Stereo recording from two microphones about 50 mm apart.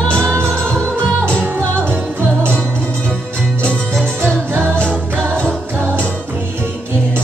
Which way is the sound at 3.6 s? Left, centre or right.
Left.